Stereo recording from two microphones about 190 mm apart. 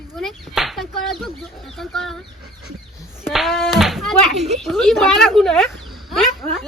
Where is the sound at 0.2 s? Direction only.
Centre (ahead or behind).